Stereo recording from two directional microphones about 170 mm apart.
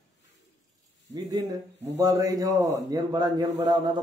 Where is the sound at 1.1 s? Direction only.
20° right (ahead or behind).